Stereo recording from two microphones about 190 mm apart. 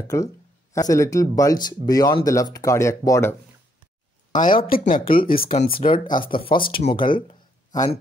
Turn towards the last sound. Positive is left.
turn(degrees=25)  # may be behind; listen again after turning